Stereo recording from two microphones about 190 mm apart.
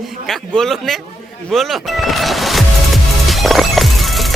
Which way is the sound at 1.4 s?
Centre (ahead or behind).